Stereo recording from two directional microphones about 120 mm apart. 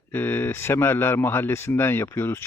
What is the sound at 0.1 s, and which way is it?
A man's voice, 15° left (ahead or behind).